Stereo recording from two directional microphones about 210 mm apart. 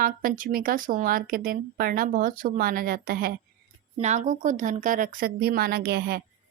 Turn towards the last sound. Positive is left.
turn(degrees=-50)  # may be behind; listen again after turning